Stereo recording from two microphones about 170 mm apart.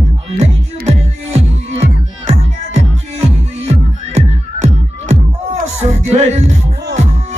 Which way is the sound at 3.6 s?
40° right (ahead or behind).